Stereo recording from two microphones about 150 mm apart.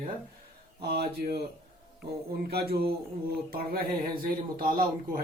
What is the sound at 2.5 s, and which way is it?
Speech, 90° right.